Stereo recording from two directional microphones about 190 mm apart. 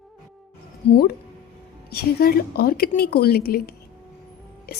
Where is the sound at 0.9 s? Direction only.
50° left (ahead or behind).